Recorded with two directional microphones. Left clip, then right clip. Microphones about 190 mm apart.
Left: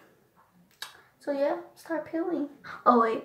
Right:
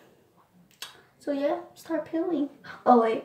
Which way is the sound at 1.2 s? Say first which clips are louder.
Even; 10° right (ahead or behind).